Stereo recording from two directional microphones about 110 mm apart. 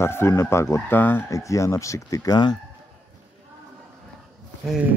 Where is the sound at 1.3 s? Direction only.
30° left (ahead or behind).